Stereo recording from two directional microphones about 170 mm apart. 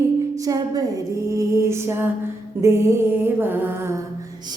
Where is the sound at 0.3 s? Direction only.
20° right (ahead or behind).